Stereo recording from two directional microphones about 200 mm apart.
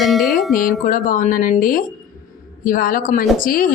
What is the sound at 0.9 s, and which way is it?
A woman's voice, 40° left (ahead or behind).